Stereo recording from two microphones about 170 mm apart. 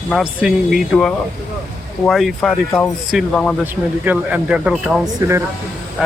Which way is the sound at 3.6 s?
10° right (ahead or behind).